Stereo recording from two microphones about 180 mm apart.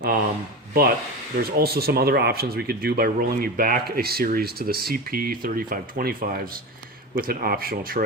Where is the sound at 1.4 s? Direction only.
60° right (ahead or behind).